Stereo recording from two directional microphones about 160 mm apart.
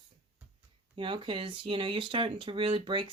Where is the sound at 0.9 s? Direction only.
30° right (ahead or behind).